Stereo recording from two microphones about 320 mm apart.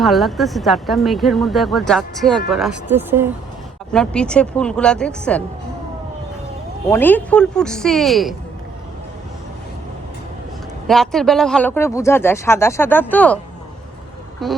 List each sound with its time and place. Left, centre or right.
0.0 s speech: centre
6.8 s speech: centre
10.8 s speech: centre
14.4 s speech: centre